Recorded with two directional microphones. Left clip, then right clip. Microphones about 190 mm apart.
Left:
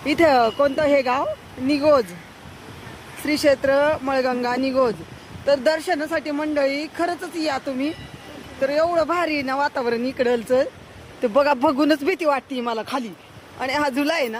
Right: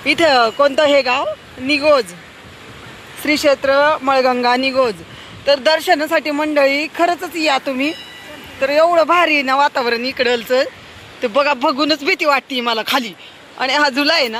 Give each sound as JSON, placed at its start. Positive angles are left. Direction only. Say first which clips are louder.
{"t": 0.0, "sound": "speech", "louder": "right 4 dB", "side_deg": -5}
{"t": 3.2, "sound": "speech", "louder": "right 4 dB", "side_deg": 0}
{"t": 9.6, "sound": "a man's voice", "louder": "right 7 dB", "side_deg": 10}
{"t": 12.1, "sound": "speech", "louder": "right 6 dB", "side_deg": 15}